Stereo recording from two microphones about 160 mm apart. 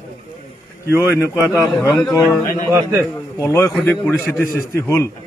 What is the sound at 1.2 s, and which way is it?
Speech, 15° left (ahead or behind).